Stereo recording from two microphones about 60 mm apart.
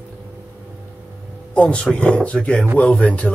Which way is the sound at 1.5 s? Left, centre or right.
Centre.